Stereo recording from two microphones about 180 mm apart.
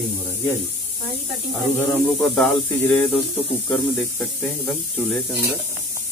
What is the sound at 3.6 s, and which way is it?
Speech, 5° left (ahead or behind).